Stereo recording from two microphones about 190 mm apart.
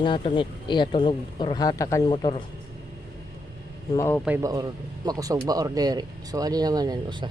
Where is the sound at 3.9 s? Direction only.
15° left (ahead or behind).